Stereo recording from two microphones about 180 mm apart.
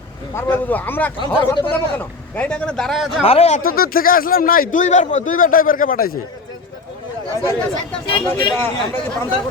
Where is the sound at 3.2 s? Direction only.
35° left (ahead or behind).